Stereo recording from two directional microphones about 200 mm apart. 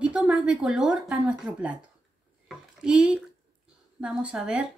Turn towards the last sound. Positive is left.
turn(degrees=-5)  # may be behind; listen again after turning